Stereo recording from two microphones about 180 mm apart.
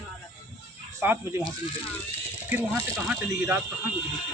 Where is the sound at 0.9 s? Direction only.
15° right (ahead or behind).